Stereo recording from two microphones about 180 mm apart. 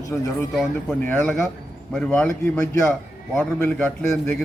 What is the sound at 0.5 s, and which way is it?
A man's voice, 5° left (ahead or behind).